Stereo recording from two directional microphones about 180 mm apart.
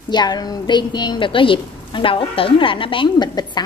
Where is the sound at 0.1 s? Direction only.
25° left (ahead or behind).